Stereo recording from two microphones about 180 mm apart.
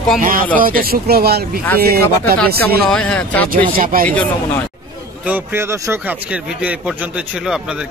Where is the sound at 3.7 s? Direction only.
50° right (ahead or behind).